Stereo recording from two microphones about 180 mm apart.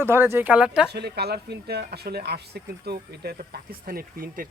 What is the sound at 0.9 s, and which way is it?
Speech, 65° right (ahead or behind).